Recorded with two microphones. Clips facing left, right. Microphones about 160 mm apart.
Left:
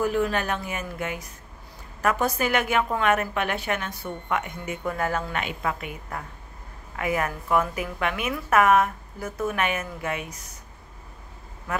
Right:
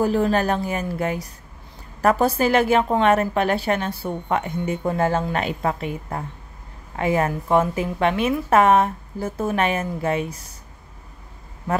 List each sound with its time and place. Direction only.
0.0 s a woman's voice: 35° right (ahead or behind)